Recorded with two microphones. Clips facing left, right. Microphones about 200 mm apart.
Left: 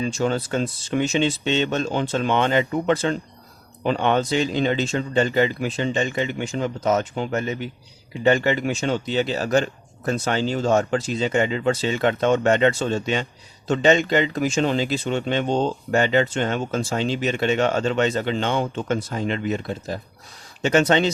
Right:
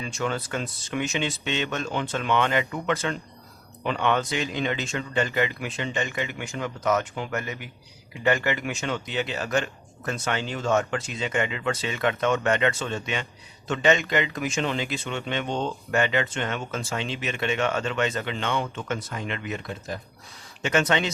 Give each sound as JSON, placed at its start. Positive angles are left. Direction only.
{"t": 0.0, "sound": "speech", "side_deg": 30}